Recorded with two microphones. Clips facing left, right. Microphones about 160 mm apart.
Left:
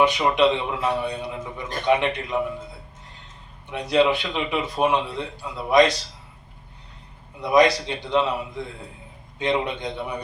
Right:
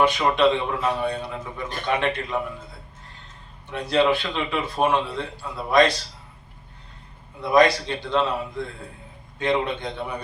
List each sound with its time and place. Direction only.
0.0 s a man's voice: 15° left (ahead or behind)
3.7 s a man's voice: 15° left (ahead or behind)
7.4 s a man's voice: 15° left (ahead or behind)